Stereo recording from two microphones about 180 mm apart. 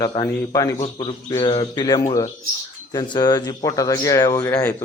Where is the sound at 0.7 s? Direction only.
35° left (ahead or behind).